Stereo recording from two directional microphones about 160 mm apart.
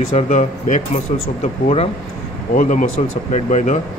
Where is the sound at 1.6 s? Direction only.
40° left (ahead or behind).